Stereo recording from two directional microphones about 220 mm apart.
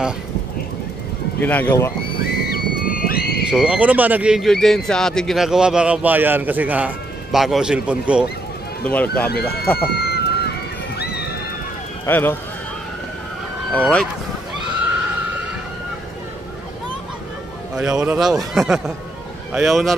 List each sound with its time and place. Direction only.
1.4 s speech: 10° left (ahead or behind)
2.4 s a sound: 40° left (ahead or behind)
3.4 s speech: 5° right (ahead or behind)
8.8 s speech: 5° left (ahead or behind)
9.3 s speech: 45° left (ahead or behind)
9.8 s a sound: 45° left (ahead or behind)
12.1 s speech: 10° left (ahead or behind)
13.7 s speech: 5° left (ahead or behind)
17.7 s speech: 5° right (ahead or behind)